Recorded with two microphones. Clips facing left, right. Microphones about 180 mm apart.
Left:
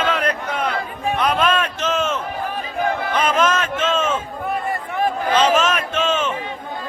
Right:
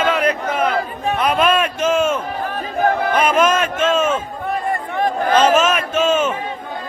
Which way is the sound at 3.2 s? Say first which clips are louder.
Right 2 dB; 10° right (ahead or behind).